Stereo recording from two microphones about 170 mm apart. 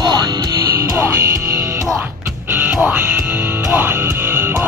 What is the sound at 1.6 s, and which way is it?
Music, 15° right (ahead or behind).